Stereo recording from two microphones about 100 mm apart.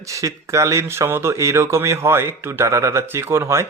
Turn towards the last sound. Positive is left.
turn(degrees=-25)  # may be behind; listen again after turning